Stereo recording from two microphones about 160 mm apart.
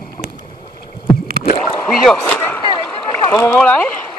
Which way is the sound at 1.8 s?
5° left (ahead or behind).